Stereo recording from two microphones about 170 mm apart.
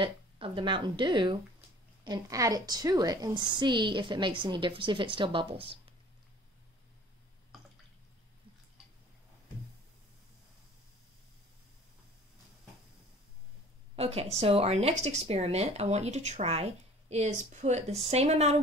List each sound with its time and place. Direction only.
0.0 s a woman's voice: 30° right (ahead or behind)
13.9 s speech: 35° right (ahead or behind)